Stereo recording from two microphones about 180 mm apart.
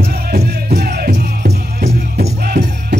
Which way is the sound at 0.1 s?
55° right (ahead or behind).